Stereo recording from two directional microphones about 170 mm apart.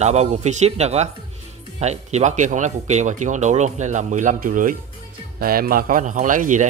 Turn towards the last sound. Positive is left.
turn(degrees=-50)  # may be behind; listen again after turning